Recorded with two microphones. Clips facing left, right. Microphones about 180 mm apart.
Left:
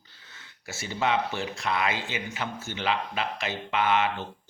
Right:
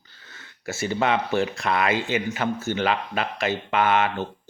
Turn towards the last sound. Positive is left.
turn(degrees=-55)  # may be behind; listen again after turning